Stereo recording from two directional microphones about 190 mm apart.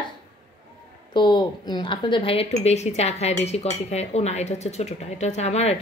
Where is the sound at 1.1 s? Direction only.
25° left (ahead or behind).